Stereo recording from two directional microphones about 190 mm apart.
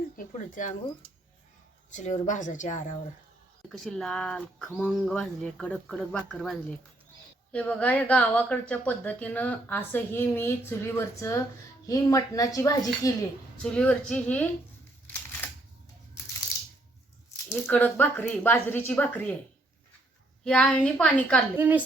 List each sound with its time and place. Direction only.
0.3 s speech: 40° left (ahead or behind)
1.9 s speech: 40° left (ahead or behind)
3.7 s speech: 5° left (ahead or behind)
13.6 s speech: 5° left (ahead or behind)
15.4 s camera: 10° left (ahead or behind)
17.5 s speech: 5° left (ahead or behind)
20.4 s speech: 5° left (ahead or behind)